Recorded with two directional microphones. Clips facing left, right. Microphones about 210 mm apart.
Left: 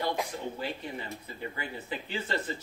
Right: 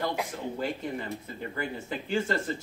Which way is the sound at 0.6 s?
50° right (ahead or behind).